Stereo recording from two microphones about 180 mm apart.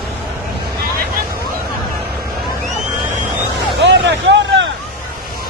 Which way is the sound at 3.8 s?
80° right.